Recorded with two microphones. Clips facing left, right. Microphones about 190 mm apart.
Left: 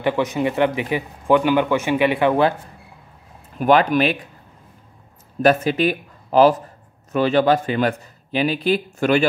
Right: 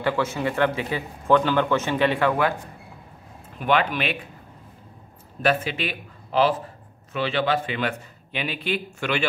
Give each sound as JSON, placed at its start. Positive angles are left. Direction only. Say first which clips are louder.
{"t": 0.0, "sound": "speech", "louder": "left 4 dB", "side_deg": 20}
{"t": 3.5, "sound": "speech", "louder": "left 7 dB", "side_deg": 40}
{"t": 5.4, "sound": "speech", "louder": "left 7 dB", "side_deg": 40}